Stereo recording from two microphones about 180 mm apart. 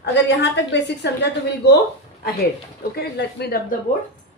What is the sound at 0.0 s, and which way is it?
A woman's voice, 75° left (ahead or behind).